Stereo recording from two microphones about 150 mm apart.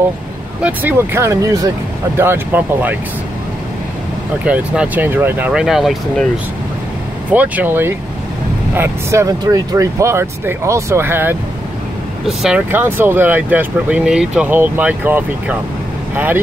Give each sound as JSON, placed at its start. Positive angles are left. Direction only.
{"t": 0.6, "sound": "speech", "side_deg": -10}
{"t": 4.5, "sound": "speech", "side_deg": -10}
{"t": 7.2, "sound": "speech", "side_deg": -10}
{"t": 12.3, "sound": "speech", "side_deg": -5}